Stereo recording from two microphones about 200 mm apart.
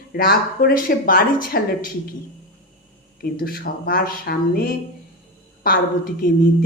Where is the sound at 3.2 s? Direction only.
50° left (ahead or behind).